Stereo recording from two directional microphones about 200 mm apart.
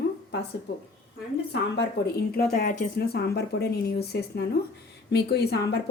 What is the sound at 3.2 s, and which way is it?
A woman's voice, 55° left (ahead or behind).